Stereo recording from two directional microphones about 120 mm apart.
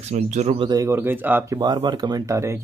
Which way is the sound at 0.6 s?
35° right (ahead or behind).